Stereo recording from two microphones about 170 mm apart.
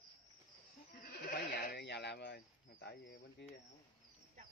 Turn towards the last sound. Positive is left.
turn(degrees=90)